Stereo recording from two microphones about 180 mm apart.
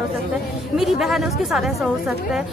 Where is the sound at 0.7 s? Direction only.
Centre (ahead or behind).